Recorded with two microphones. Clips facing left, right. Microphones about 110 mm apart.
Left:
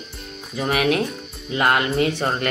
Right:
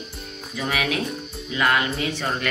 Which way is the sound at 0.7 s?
55° left (ahead or behind).